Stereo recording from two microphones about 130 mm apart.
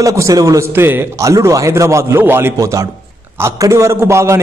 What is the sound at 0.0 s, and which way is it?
A man's voice, 25° right (ahead or behind).